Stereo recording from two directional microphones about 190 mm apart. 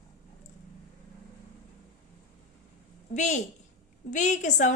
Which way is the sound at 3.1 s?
40° left (ahead or behind).